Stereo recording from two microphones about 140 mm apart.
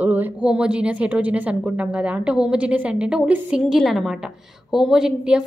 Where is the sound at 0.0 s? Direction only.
10° right (ahead or behind).